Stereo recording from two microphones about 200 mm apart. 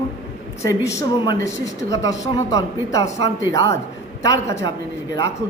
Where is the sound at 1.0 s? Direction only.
15° left (ahead or behind).